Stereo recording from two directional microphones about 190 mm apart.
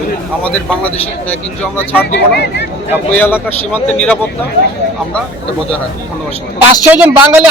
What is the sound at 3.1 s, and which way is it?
Speech, 10° left (ahead or behind).